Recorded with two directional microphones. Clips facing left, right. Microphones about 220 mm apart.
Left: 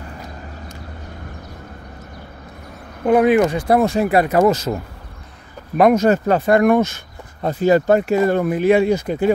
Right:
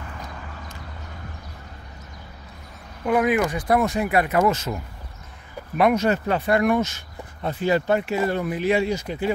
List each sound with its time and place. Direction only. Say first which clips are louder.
3.1 s speech: left 7 dB; 30° left (ahead or behind)
5.8 s speech: left 6 dB; 45° left (ahead or behind)